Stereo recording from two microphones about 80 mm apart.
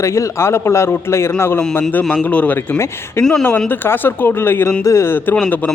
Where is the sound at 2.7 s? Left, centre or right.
Left.